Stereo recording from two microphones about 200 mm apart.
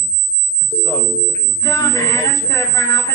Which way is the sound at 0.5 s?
10° left (ahead or behind).